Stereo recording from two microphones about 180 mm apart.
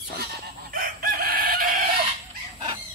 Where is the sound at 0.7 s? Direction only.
55° right (ahead or behind).